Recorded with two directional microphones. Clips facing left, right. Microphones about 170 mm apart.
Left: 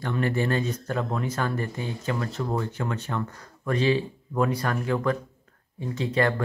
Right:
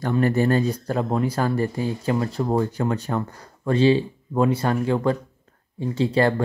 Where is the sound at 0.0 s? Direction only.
40° right (ahead or behind).